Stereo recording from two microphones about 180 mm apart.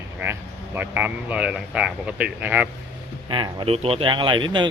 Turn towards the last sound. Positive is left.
turn(degrees=-25)  # may be behind; listen again after turning